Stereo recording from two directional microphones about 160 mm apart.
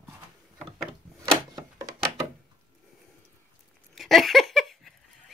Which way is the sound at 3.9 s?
Centre (ahead or behind).